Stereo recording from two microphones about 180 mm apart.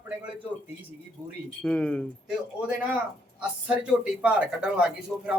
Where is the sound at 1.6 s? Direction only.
5° left (ahead or behind).